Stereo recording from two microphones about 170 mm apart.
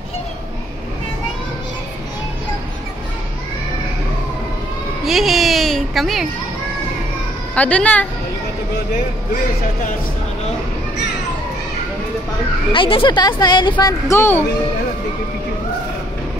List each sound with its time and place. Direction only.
5.0 s baby cry: centre (ahead or behind)
7.5 s speech: 5° left (ahead or behind)
12.7 s speech: 30° left (ahead or behind); by 14.4 s 15° left (ahead or behind)